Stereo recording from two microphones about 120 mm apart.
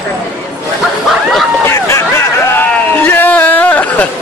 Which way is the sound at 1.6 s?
20° left (ahead or behind).